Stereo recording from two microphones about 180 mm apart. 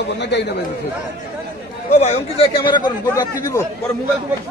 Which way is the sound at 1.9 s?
35° left (ahead or behind).